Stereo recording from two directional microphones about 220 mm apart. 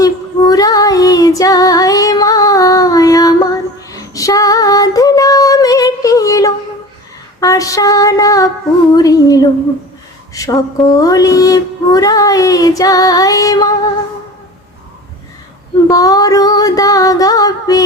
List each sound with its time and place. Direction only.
0.0 s child singing: 15° left (ahead or behind)
7.3 s a sound: 15° left (ahead or behind)
10.3 s child singing: 15° left (ahead or behind)
15.9 s music: 15° left (ahead or behind)